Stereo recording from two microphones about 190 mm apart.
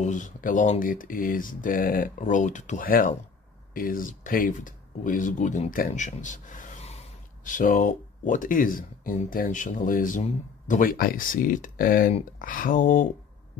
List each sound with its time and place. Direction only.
0.0 s speech: 40° left (ahead or behind)